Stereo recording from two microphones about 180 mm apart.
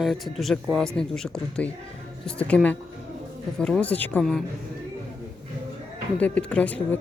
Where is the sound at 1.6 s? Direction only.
80° left.